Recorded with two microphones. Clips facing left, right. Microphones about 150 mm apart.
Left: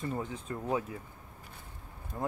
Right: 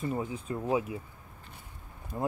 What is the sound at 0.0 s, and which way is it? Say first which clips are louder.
Speech: right 3 dB; 10° right (ahead or behind).